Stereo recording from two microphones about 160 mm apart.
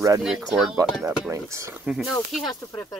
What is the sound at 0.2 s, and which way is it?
Speech, centre (ahead or behind).